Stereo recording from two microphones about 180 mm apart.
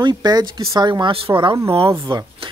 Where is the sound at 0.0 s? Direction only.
25° right (ahead or behind).